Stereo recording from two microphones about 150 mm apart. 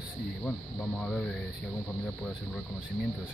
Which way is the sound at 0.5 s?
5° left (ahead or behind).